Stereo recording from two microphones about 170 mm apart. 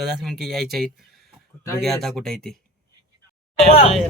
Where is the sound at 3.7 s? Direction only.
35° left (ahead or behind).